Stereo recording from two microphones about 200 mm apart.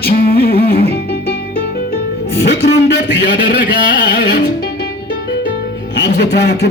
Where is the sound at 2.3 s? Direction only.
55° left (ahead or behind).